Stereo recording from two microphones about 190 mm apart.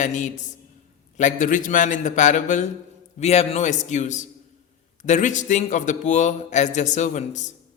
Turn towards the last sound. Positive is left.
turn(degrees=40)  # may be behind; listen again after turning